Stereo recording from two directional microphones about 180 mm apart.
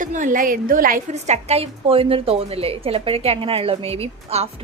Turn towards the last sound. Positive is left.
turn(degrees=-35)  # may be behind; listen again after turning